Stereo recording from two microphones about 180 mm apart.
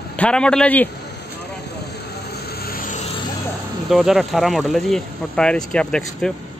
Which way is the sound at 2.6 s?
55° left (ahead or behind).